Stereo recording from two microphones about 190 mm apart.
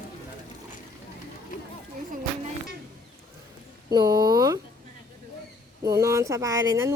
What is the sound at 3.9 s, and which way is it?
Speech, 20° right (ahead or behind).